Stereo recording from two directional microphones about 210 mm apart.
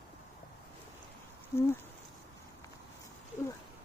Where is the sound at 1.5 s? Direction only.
15° left (ahead or behind).